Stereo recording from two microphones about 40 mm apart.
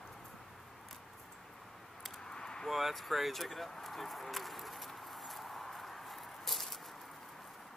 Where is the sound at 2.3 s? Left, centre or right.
Centre.